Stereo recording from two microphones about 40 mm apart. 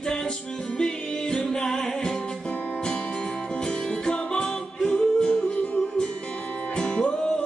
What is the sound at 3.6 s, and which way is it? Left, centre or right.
Music, centre.